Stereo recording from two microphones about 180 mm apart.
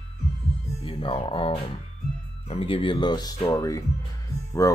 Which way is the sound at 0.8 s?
30° left (ahead or behind).